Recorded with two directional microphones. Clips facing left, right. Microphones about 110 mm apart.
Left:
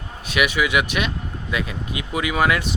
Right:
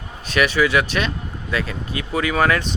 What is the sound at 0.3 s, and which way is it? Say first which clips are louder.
Speech: right 3 dB; 10° left (ahead or behind).